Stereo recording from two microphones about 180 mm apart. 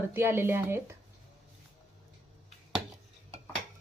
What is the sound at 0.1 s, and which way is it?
Speech, 10° right (ahead or behind).